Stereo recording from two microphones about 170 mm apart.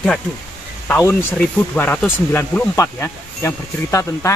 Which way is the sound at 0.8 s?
15° left (ahead or behind).